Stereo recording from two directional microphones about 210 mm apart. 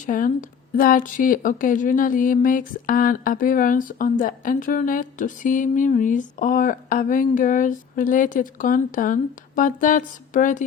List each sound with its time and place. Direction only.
0.0 s speech: 40° left (ahead or behind)